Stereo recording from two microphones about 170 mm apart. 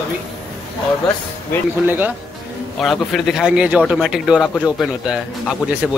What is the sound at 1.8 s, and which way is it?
Speech, 10° right (ahead or behind).